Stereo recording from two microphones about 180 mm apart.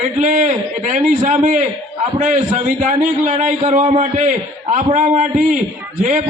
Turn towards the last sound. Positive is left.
turn(degrees=-45)  # may be behind; listen again after turning